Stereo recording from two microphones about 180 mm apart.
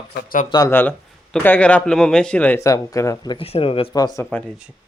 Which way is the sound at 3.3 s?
30° left (ahead or behind).